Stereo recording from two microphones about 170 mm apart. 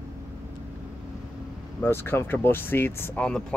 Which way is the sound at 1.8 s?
15° left (ahead or behind).